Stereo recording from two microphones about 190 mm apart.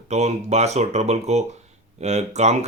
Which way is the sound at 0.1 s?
35° right (ahead or behind).